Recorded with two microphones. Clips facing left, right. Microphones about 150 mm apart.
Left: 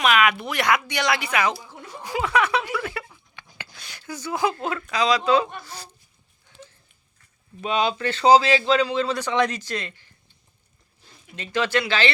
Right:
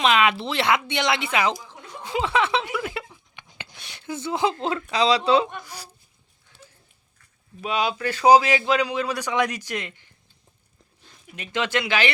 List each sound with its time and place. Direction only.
0.0 s speech: 25° right (ahead or behind)
2.0 s a sound: 25° right (ahead or behind)
4.6 s speech: 25° right (ahead or behind); by 5.9 s 10° right (ahead or behind)
6.5 s a sound: 15° left (ahead or behind)
7.6 s speech: 5° right (ahead or behind)
11.3 s speech: 20° right (ahead or behind)